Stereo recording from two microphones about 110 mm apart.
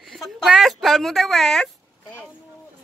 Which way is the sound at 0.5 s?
5° right (ahead or behind).